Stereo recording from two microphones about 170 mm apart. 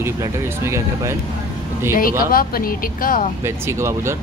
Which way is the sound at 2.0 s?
60° left (ahead or behind).